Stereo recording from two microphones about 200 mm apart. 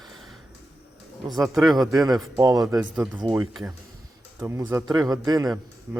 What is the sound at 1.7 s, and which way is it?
Speech, 20° right (ahead or behind).